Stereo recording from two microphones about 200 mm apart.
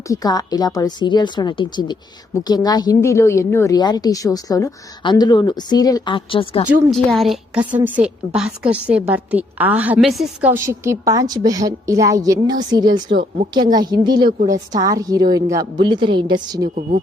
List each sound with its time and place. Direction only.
0.1 s a woman's voice: 20° left (ahead or behind)
6.9 s a woman's voice: centre (ahead or behind)
7.6 s a woman's voice: 20° right (ahead or behind)
7.9 s a woman's voice: 5° right (ahead or behind)